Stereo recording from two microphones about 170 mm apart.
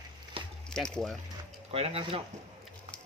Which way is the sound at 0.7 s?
5° left (ahead or behind).